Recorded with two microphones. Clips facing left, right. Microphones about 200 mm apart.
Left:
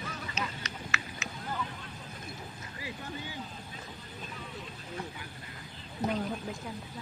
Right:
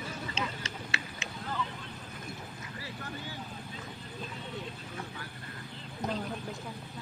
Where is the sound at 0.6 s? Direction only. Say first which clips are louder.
Even; 30° right (ahead or behind).